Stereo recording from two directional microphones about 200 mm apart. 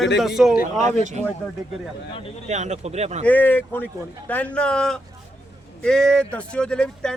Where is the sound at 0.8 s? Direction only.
35° right (ahead or behind).